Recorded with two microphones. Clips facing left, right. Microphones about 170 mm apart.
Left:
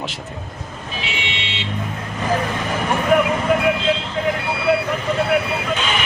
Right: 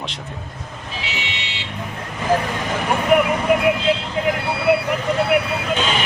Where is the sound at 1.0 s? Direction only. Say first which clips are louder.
Left 3 dB; 20° left (ahead or behind).